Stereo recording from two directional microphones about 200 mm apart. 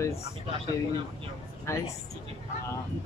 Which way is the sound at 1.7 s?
15° left (ahead or behind).